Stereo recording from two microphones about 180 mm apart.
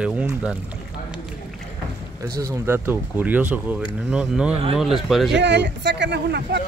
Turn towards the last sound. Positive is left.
turn(degrees=-70)  # may be behind; listen again after turning